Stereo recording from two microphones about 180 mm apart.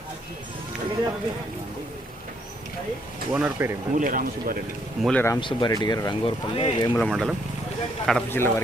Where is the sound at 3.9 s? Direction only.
45° right (ahead or behind).